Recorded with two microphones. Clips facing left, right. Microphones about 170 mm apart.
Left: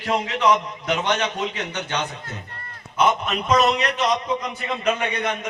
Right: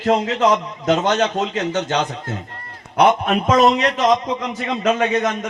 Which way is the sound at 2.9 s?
60° right (ahead or behind).